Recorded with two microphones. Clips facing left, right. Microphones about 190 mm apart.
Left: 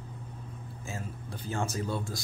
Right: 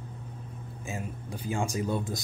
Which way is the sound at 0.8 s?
15° right (ahead or behind).